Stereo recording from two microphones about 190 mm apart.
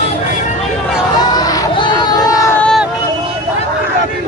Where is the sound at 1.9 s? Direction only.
10° left (ahead or behind).